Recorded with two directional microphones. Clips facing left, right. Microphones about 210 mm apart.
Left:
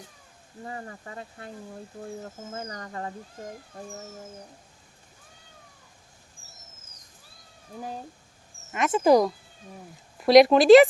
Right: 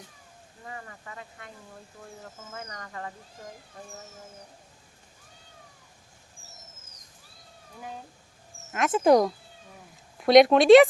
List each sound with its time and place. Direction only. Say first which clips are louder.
0.6 s speech: left 5 dB; 35° left (ahead or behind)
8.7 s speech: even; centre (ahead or behind)